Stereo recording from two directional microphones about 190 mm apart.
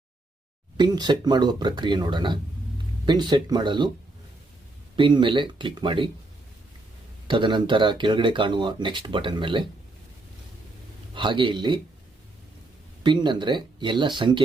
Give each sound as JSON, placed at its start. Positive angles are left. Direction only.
{"t": 0.8, "sound": "speech", "side_deg": -25}
{"t": 4.9, "sound": "speech", "side_deg": -25}
{"t": 7.3, "sound": "speech", "side_deg": -25}
{"t": 11.1, "sound": "speech", "side_deg": -25}
{"t": 13.0, "sound": "speech", "side_deg": -25}